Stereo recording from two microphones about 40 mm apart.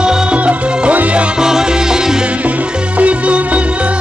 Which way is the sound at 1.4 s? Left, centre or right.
Centre.